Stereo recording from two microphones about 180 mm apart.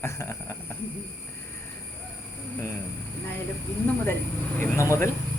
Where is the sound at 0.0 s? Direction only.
15° left (ahead or behind).